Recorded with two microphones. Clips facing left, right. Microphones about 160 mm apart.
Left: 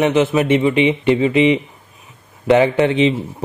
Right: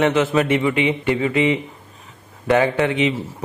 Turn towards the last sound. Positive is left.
turn(degrees=25)  # may be behind; listen again after turning